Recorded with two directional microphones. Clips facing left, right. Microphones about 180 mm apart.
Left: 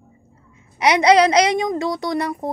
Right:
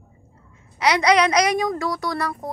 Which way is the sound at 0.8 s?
25° left (ahead or behind).